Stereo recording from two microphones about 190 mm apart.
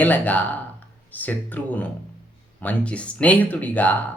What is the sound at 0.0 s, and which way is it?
Speech, 10° left (ahead or behind).